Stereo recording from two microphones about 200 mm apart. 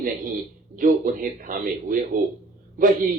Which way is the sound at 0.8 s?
45° right (ahead or behind).